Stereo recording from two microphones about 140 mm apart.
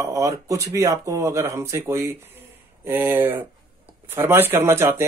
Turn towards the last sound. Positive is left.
turn(degrees=-15)  # may be behind; listen again after turning